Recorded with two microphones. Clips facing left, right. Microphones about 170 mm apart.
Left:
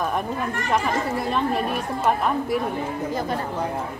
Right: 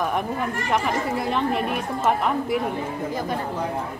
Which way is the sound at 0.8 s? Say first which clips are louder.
Even; 20° right (ahead or behind).